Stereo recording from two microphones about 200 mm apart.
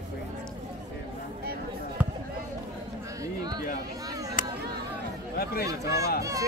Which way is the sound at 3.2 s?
20° right (ahead or behind).